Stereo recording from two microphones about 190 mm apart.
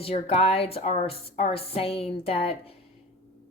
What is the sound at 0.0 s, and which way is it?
Speech, 30° left (ahead or behind).